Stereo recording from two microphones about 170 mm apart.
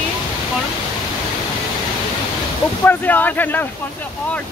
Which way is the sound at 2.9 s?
10° left (ahead or behind).